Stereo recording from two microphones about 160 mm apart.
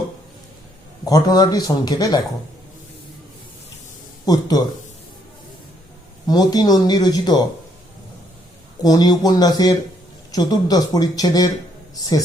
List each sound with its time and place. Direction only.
1.0 s speech: 25° left (ahead or behind)
4.3 s speech: 25° left (ahead or behind)
6.2 s speech: 25° left (ahead or behind)
8.8 s speech: 25° left (ahead or behind)